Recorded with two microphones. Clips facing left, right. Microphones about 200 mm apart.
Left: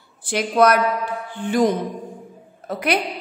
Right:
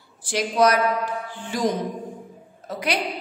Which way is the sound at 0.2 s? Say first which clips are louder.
Left 3 dB; 60° left (ahead or behind).